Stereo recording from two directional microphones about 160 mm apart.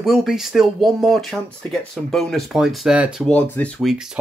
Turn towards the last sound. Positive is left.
turn(degrees=10)  # may be behind; listen again after turning